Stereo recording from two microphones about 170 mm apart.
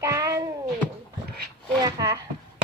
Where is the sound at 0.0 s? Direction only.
20° right (ahead or behind).